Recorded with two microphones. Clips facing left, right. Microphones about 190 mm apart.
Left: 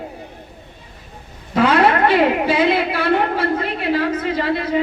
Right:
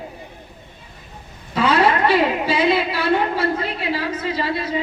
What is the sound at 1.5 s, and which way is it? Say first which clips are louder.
A woman's voice: left 2 dB; 55° left (ahead or behind).